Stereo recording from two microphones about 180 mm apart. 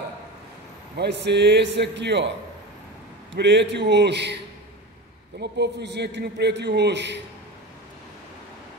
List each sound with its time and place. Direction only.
0.9 s a man's voice: 70° right (ahead or behind)
3.3 s a man's voice: 75° right (ahead or behind)
5.4 s a man's voice: 65° right (ahead or behind)